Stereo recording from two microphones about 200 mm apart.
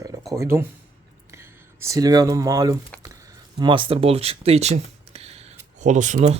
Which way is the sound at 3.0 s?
15° right (ahead or behind).